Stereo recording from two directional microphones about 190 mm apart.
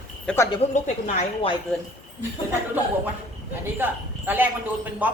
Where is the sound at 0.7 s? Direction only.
40° left (ahead or behind).